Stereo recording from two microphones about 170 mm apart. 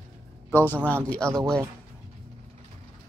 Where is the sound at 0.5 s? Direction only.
10° left (ahead or behind).